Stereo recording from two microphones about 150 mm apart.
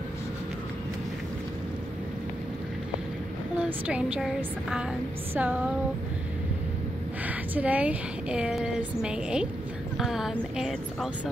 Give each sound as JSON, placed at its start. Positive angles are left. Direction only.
{"t": 3.5, "sound": "speech", "side_deg": -10}
{"t": 7.2, "sound": "a woman's voice", "side_deg": -10}